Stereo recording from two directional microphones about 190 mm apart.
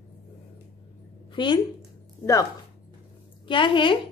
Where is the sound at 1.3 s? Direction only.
25° left (ahead or behind).